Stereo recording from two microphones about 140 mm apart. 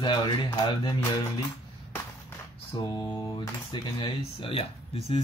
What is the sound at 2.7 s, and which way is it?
Speech, 35° left (ahead or behind).